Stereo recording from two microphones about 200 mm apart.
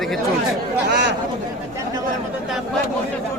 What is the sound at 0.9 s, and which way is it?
Speech, 55° right (ahead or behind).